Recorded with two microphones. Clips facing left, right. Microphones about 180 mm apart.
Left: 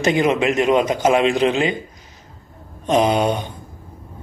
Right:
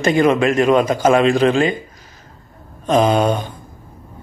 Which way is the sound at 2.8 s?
20° left (ahead or behind).